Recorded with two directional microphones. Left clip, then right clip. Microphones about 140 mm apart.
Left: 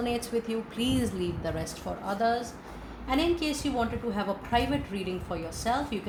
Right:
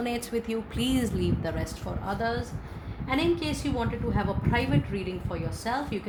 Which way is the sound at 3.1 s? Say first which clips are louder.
Even; 40° right (ahead or behind).